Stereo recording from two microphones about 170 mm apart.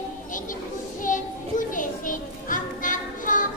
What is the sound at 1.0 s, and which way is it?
Children playing, 50° left (ahead or behind).